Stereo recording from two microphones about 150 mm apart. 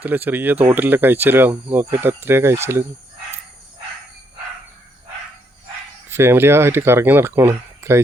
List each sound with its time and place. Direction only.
0.0 s speech: 10° right (ahead or behind)
6.1 s speech: 15° right (ahead or behind)